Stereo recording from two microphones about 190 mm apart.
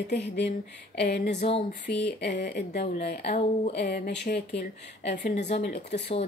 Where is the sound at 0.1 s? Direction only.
65° left (ahead or behind).